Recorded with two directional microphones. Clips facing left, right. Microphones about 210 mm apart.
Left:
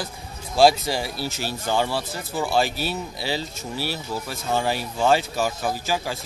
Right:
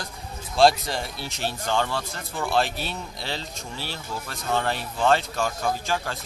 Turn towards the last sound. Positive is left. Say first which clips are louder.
# left 1 dB
turn(degrees=5)  # may be behind; listen again after turning